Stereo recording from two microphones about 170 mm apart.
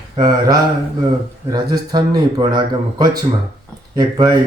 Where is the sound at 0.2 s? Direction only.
25° right (ahead or behind).